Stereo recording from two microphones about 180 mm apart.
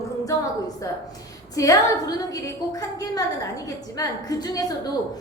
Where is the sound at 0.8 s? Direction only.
20° left (ahead or behind).